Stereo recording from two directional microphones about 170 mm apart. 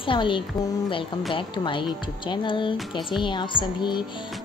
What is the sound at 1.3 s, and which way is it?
Speech, 30° left (ahead or behind).